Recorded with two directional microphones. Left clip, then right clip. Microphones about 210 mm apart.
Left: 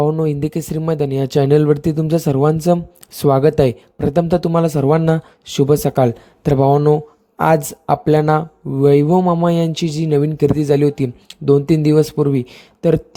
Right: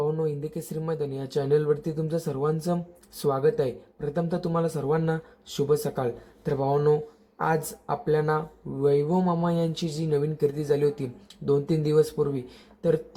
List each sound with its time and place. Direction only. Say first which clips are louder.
0.0 s speech: left 10 dB; 40° left (ahead or behind)
7.3 s speech: left 12 dB; 45° left (ahead or behind)